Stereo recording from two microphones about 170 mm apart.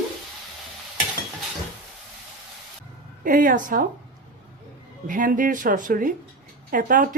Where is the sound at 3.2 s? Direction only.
50° right (ahead or behind).